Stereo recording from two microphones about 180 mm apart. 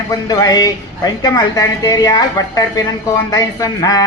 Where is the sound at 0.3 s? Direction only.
20° left (ahead or behind).